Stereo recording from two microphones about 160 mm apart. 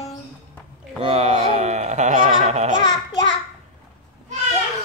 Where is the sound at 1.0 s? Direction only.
40° right (ahead or behind).